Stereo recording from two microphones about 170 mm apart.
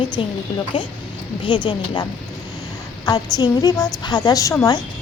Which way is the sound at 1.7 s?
25° left (ahead or behind).